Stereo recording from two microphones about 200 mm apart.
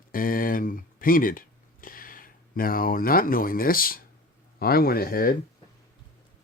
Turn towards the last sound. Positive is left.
turn(degrees=45)  # may be behind; listen again after turning